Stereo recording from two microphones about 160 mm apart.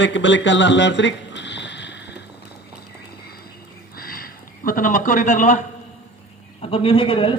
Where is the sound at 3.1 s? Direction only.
80° left.